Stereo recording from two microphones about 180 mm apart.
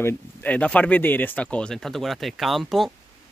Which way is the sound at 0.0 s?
10° left (ahead or behind).